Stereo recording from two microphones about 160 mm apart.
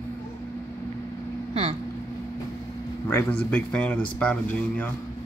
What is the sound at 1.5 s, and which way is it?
Speech, 40° right (ahead or behind).